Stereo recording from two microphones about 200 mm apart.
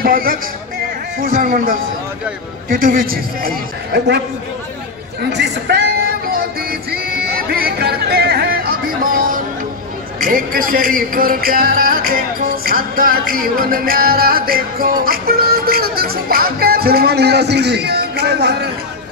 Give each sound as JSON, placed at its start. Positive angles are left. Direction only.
{"t": 0.0, "sound": "speech", "side_deg": -45}
{"t": 1.2, "sound": "music", "side_deg": -45}
{"t": 5.4, "sound": "a sound", "side_deg": -60}
{"t": 6.2, "sound": "music", "side_deg": -50}